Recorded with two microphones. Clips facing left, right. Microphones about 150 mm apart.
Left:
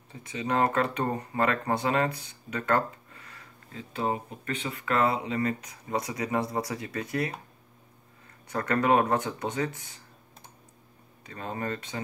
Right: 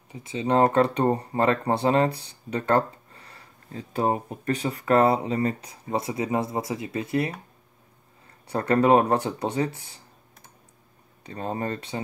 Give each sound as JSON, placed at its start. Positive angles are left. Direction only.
{"t": 0.1, "sound": "speech", "side_deg": -25}
{"t": 8.5, "sound": "speech", "side_deg": -30}
{"t": 11.2, "sound": "speech", "side_deg": -35}